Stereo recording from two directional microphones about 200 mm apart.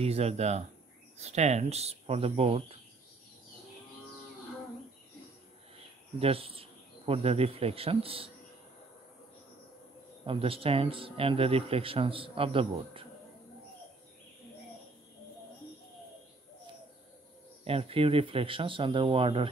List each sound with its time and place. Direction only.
0.0 s speech: 30° right (ahead or behind)
6.1 s speech: 30° right (ahead or behind)
10.2 s speech: 25° right (ahead or behind)
17.6 s speech: 30° right (ahead or behind)